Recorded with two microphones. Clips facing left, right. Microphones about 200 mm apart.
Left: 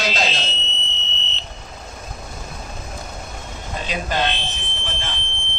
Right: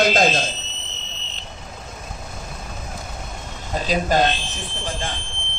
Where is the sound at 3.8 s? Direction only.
40° right (ahead or behind).